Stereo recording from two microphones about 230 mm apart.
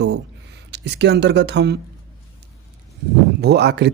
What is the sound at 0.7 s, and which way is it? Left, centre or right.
Speech, right.